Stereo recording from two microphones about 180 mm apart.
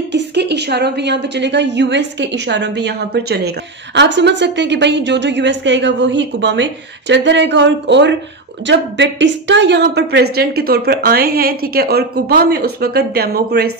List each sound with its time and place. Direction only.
0.1 s a woman's voice: 70° right (ahead or behind)
8.6 s a woman's voice: 85° right; by 13.7 s 60° right (ahead or behind)